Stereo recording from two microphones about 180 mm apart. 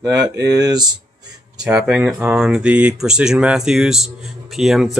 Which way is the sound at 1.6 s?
5° right (ahead or behind).